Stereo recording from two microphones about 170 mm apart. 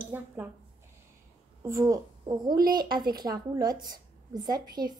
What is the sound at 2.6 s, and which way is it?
Speech, 60° right (ahead or behind).